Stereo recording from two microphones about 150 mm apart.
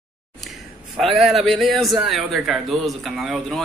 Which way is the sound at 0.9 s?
Centre (ahead or behind).